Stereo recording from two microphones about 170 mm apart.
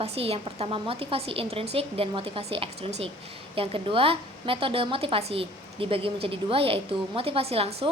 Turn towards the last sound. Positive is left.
turn(degrees=-35)  # may be behind; listen again after turning